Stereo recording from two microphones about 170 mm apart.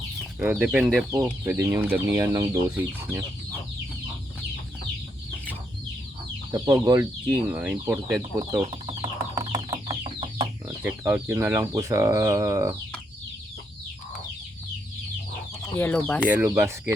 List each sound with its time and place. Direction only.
0.3 s speech: 5° right (ahead or behind)
1.1 s speech: 15° right (ahead or behind)
6.5 s speech: 20° right (ahead or behind)
7.5 s speech: 10° right (ahead or behind)
8.7 s chicken: 25° right (ahead or behind)
10.8 s speech: 10° right (ahead or behind)
15.8 s speech: 10° left (ahead or behind)
16.3 s speech: 10° right (ahead or behind)